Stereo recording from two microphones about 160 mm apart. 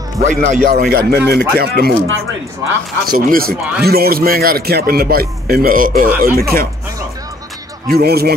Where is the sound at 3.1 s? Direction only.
65° right (ahead or behind).